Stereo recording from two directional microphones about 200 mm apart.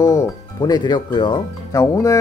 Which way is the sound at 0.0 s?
15° left (ahead or behind).